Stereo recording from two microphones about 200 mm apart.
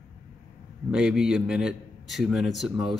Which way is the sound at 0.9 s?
5° right (ahead or behind).